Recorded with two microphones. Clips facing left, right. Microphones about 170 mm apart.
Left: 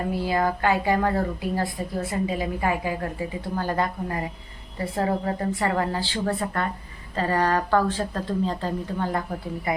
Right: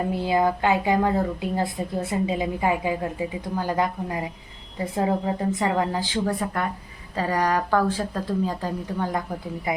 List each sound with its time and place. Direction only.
0.1 s speech: 20° right (ahead or behind)